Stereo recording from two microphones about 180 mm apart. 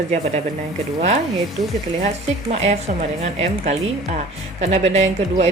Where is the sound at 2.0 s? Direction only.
35° right (ahead or behind).